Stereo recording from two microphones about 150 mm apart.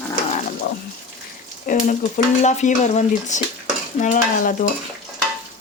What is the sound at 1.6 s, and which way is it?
Speech, 60° left (ahead or behind).